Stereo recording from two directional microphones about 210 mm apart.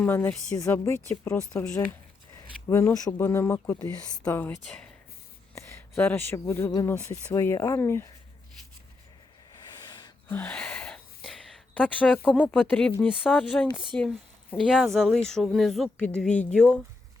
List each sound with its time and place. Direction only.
0.0 s speech: 10° left (ahead or behind)
9.9 s gasp: 20° left (ahead or behind)
10.3 s a sound: 5° left (ahead or behind)
13.0 s speech: centre (ahead or behind)